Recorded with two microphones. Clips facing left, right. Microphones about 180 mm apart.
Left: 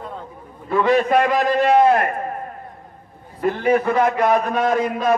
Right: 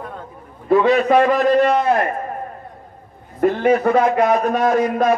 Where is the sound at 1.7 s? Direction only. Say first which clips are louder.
Left 2 dB; 55° left (ahead or behind).